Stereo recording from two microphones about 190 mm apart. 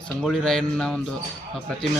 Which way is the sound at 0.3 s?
Centre (ahead or behind).